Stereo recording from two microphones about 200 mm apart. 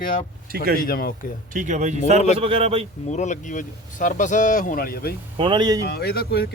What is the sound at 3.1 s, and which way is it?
Speech, 35° left (ahead or behind).